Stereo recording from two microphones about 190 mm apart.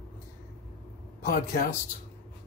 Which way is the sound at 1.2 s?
50° left (ahead or behind).